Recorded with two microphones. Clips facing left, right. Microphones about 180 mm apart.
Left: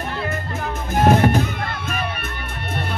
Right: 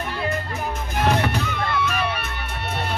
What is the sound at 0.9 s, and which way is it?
Music, 45° left (ahead or behind).